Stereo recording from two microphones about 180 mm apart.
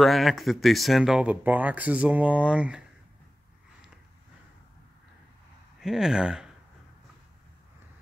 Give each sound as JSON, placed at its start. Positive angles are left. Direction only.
{"t": 0.0, "sound": "speech", "side_deg": 0}
{"t": 5.8, "sound": "speech", "side_deg": -5}